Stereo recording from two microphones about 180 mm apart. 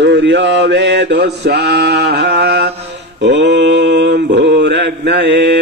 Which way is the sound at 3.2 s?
75° right (ahead or behind).